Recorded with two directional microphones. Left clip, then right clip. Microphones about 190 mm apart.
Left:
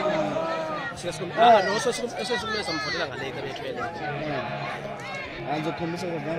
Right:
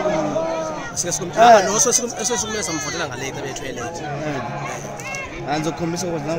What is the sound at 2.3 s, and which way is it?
Speech, 30° right (ahead or behind).